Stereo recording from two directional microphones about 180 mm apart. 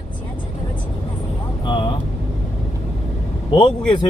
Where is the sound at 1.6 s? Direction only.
25° left (ahead or behind).